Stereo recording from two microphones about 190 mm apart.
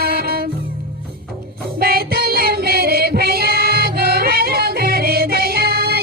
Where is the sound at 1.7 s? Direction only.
50° right (ahead or behind).